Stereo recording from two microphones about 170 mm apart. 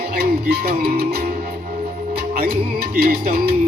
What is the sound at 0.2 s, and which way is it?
Music, 65° right (ahead or behind).